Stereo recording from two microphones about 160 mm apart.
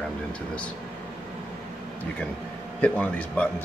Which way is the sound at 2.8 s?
10° left (ahead or behind).